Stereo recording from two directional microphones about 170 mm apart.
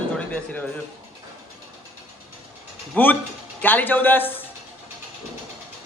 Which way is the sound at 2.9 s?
10° left (ahead or behind).